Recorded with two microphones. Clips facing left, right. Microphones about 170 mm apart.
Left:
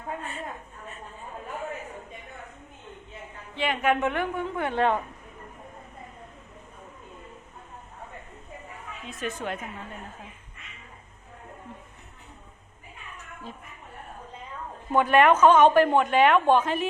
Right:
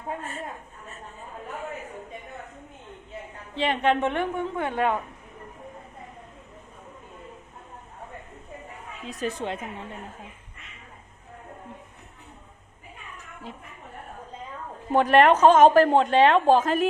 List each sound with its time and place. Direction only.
0.2 s a woman's voice: 45° right (ahead or behind)
3.5 s a woman's voice: 30° right (ahead or behind); by 4.9 s 10° right (ahead or behind)
9.0 s a woman's voice: 35° right (ahead or behind)
14.9 s a woman's voice: 35° right (ahead or behind)